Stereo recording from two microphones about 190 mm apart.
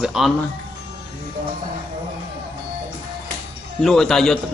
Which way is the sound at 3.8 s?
Centre (ahead or behind).